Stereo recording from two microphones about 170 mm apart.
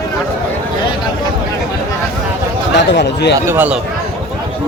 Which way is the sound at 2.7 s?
90° left.